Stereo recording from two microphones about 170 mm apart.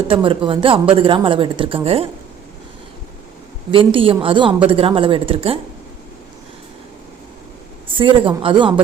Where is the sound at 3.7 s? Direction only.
30° right (ahead or behind).